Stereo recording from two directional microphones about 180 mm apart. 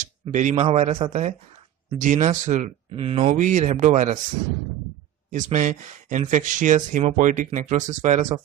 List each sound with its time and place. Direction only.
0.0 s a man's voice: 45° right (ahead or behind)
5.3 s speech: 45° right (ahead or behind)